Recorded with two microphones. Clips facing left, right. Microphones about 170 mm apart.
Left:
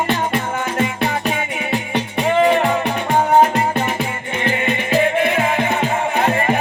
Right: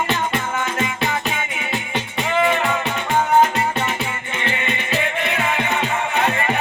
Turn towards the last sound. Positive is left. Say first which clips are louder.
# left 3 dB
turn(degrees=30)  # may be behind; listen again after turning